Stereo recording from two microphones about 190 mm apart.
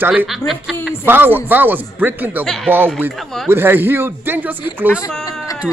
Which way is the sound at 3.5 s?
10° right (ahead or behind).